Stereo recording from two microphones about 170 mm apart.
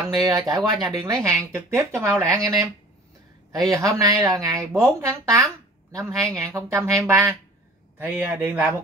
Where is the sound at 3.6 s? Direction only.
20° right (ahead or behind).